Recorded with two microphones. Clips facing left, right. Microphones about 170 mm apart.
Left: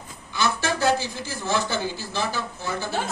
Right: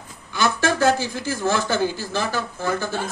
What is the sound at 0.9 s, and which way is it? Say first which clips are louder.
Speech: right 3 dB; 50° right (ahead or behind).